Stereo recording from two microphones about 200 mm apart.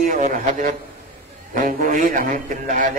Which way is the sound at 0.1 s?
40° right (ahead or behind).